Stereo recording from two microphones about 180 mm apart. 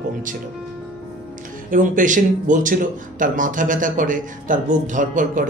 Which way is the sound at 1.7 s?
45° right (ahead or behind).